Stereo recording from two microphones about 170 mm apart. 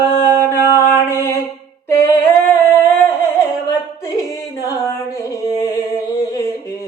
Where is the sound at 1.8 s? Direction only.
15° left (ahead or behind).